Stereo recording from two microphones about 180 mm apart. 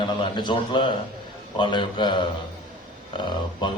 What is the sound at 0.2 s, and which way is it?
A man's voice, 25° left (ahead or behind).